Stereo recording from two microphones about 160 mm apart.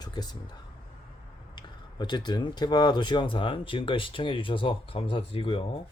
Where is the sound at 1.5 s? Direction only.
30° left (ahead or behind).